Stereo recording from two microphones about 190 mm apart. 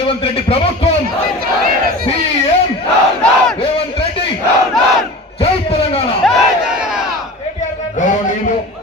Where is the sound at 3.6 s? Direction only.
30° left (ahead or behind).